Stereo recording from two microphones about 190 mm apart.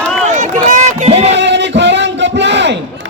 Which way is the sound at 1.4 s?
65° right (ahead or behind).